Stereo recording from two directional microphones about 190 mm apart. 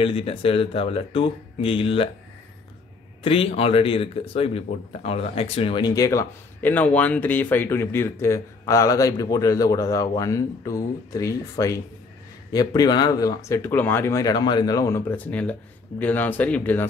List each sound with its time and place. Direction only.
0.0 s speech: 30° left (ahead or behind)
3.3 s speech: 30° left (ahead or behind); by 16.8 s 10° left (ahead or behind)